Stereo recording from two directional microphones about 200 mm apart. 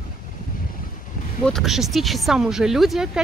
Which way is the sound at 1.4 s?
Centre (ahead or behind).